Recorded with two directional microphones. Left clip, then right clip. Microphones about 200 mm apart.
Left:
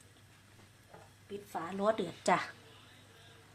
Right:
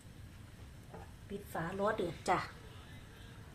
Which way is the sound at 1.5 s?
50° left (ahead or behind).